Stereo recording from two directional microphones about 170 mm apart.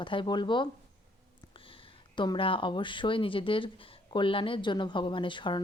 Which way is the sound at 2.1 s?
30° left (ahead or behind).